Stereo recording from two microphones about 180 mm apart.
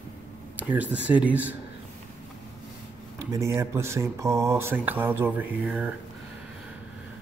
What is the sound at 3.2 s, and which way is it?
Speech, 15° right (ahead or behind).